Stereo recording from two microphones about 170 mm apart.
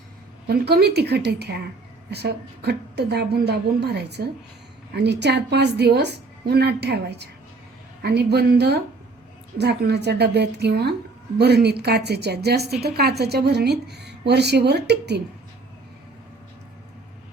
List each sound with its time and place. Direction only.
0.4 s a woman's voice: 70° right (ahead or behind)
8.0 s a woman's voice: 70° right (ahead or behind)